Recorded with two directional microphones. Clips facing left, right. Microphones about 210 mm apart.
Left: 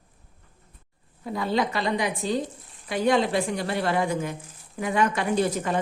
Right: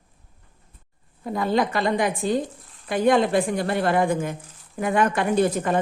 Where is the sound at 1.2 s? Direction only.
50° right (ahead or behind).